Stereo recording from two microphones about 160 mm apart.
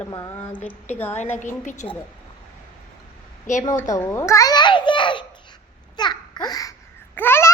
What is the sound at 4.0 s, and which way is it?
Babbling, 15° left (ahead or behind).